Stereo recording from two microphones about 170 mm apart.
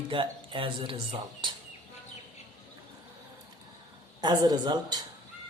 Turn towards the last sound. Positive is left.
turn(degrees=-25)  # may be behind; listen again after turning